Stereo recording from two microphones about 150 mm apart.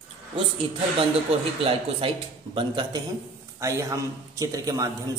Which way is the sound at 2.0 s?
40° right (ahead or behind).